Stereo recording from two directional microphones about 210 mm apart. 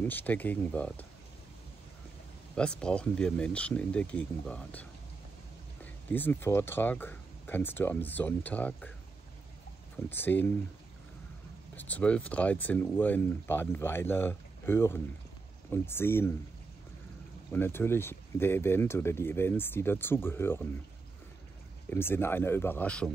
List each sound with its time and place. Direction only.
0.0 s speech: 10° left (ahead or behind)
2.8 s speech: 5° left (ahead or behind)
6.0 s speech: 10° left (ahead or behind)
10.0 s speech: 10° left (ahead or behind)
11.7 s speech: 10° left (ahead or behind)
17.5 s speech: 10° left (ahead or behind)
21.9 s speech: 10° left (ahead or behind)